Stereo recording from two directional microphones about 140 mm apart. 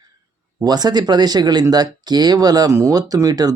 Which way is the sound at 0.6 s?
30° right (ahead or behind).